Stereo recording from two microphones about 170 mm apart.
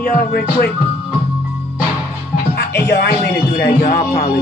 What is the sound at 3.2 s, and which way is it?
Speech, 70° left (ahead or behind).